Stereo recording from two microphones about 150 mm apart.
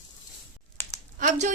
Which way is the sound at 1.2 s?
55° right (ahead or behind).